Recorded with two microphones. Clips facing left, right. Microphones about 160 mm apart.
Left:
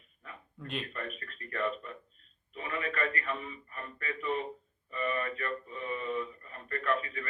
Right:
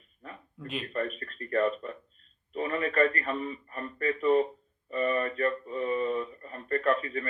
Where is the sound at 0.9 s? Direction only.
40° right (ahead or behind).